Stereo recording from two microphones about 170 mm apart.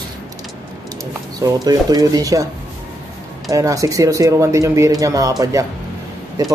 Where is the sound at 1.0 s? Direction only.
20° right (ahead or behind).